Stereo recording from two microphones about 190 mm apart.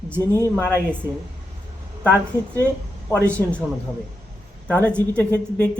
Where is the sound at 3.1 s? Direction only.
10° left (ahead or behind).